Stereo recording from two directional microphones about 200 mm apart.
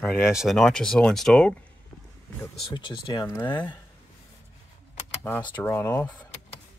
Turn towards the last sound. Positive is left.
turn(degrees=10)  # may be behind; listen again after turning